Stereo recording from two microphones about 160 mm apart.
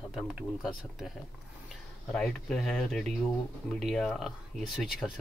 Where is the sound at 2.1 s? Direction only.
5° left (ahead or behind).